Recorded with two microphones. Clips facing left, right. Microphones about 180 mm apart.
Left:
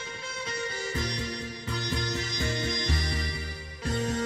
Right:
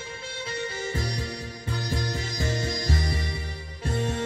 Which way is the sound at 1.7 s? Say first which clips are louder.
Right 2 dB; 30° right (ahead or behind).